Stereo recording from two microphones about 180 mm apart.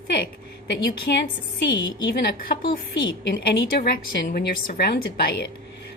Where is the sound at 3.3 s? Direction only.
50° left (ahead or behind).